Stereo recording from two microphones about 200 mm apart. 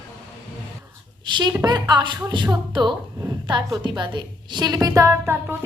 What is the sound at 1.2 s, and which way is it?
A woman's voice, 20° right (ahead or behind).